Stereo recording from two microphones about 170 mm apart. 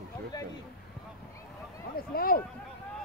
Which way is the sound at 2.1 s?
60° left (ahead or behind).